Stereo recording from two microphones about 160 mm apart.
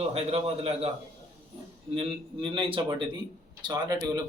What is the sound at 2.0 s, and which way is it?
A man's voice, 30° right (ahead or behind).